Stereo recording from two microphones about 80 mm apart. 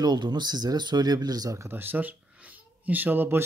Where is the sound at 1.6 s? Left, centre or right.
Right.